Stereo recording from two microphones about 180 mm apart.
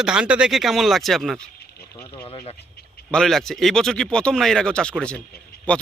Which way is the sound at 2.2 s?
30° left (ahead or behind).